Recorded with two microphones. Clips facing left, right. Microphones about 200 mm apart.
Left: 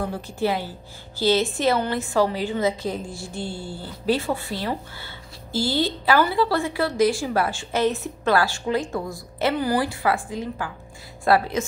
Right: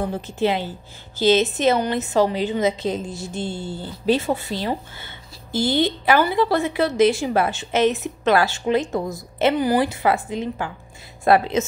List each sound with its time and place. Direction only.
0.0 s a woman's voice: 20° right (ahead or behind)